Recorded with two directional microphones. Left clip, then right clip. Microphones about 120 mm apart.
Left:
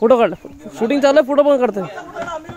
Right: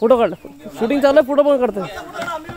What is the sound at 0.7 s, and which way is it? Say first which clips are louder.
Speech: left 1 dB; 5° left (ahead or behind).